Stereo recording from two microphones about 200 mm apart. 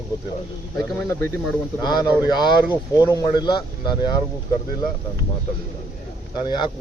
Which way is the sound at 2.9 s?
20° left (ahead or behind).